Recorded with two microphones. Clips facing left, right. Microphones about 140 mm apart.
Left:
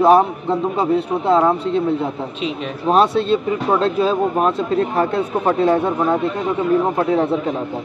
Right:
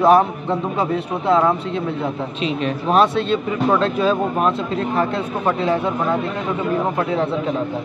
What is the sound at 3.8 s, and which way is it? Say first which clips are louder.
Speech: left 1 dB; 35° left (ahead or behind).